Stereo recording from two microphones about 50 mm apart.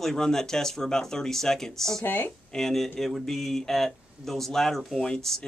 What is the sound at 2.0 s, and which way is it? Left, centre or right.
Speech, left.